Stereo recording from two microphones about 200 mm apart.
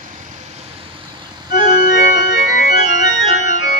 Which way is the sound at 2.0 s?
50° left (ahead or behind).